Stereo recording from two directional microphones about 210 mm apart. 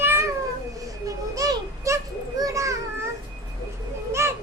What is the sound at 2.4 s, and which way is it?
Children playing, 15° right (ahead or behind).